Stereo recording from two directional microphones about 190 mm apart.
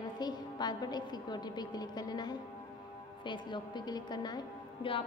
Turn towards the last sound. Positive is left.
turn(degrees=25)  # may be behind; listen again after turning